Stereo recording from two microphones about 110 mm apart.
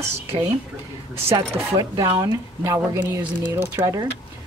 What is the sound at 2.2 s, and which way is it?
Speech, 30° right (ahead or behind).